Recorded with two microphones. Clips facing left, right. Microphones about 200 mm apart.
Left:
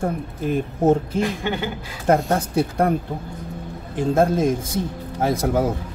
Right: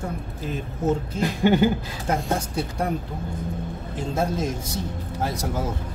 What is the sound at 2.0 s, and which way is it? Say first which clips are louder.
Speech: left 8 dB; 55° left (ahead or behind).